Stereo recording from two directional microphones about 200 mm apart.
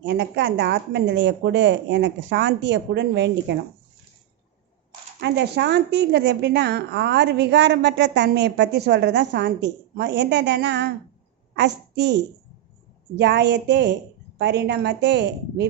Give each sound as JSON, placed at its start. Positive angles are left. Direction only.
{"t": 0.0, "sound": "a woman's voice", "side_deg": -60}
{"t": 5.2, "sound": "a woman's voice", "side_deg": -60}